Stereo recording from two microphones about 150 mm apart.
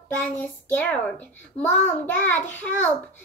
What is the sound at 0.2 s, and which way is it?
A child's voice, 10° left (ahead or behind).